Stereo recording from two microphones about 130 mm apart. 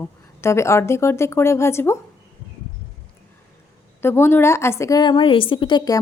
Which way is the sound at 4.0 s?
20° left (ahead or behind).